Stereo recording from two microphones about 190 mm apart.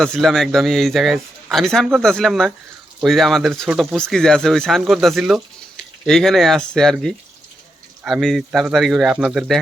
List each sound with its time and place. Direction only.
0.0 s speech: centre (ahead or behind)